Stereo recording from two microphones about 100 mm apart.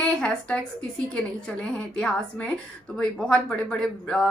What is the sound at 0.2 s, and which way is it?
Speech, 10° left (ahead or behind).